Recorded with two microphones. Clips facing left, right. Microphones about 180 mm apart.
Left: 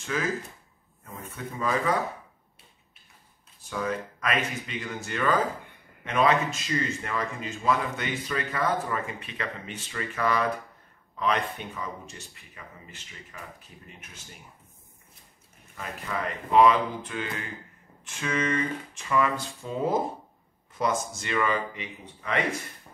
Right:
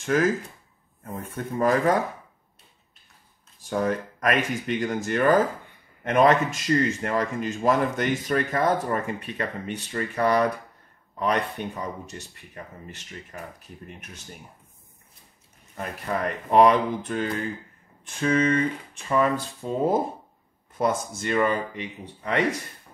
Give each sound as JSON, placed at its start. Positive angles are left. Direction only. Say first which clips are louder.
{"t": 0.0, "sound": "speech", "louder": "right 7 dB", "side_deg": -50}
{"t": 3.6, "sound": "speech", "louder": "right 5 dB", "side_deg": -50}
{"t": 11.7, "sound": "speech", "louder": "right 4 dB", "side_deg": -40}
{"t": 15.8, "sound": "speech", "louder": "right 5 dB", "side_deg": -45}
{"t": 20.8, "sound": "speech", "louder": "right 3 dB", "side_deg": -55}